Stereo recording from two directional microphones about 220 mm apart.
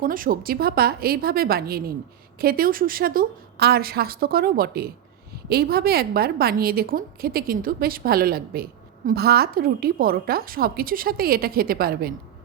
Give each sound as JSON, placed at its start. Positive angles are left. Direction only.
{"t": 0.0, "sound": "a woman's voice", "side_deg": -40}